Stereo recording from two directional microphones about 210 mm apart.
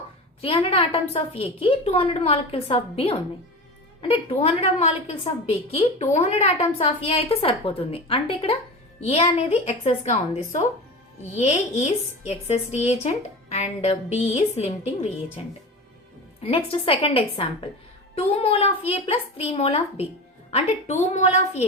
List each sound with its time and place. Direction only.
0.4 s a woman's voice: 25° left (ahead or behind)
16.4 s a woman's voice: 25° left (ahead or behind)